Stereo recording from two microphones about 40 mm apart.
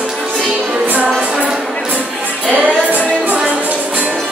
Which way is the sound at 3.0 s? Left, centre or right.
Right.